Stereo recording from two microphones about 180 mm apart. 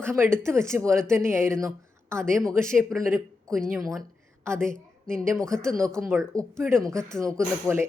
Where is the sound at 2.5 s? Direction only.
15° right (ahead or behind).